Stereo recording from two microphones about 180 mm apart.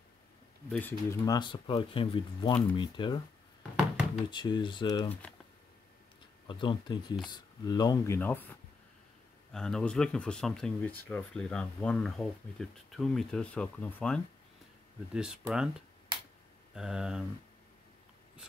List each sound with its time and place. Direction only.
0.7 s speech: 10° left (ahead or behind)
1.2 s speech: 25° left (ahead or behind)
4.3 s speech: 25° left (ahead or behind)
6.4 s speech: 25° left (ahead or behind); by 14.2 s 5° left (ahead or behind)
15.1 s speech: 5° right (ahead or behind)
16.7 s speech: 5° right (ahead or behind)